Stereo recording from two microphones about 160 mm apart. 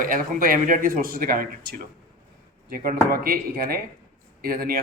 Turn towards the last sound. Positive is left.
turn(degrees=-65)  # may be behind; listen again after turning